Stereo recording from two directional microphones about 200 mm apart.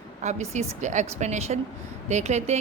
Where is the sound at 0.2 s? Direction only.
35° right (ahead or behind).